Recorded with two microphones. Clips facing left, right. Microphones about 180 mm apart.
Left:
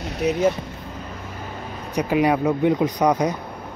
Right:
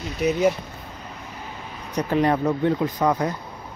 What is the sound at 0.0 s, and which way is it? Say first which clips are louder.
Speech: even; 65° left (ahead or behind).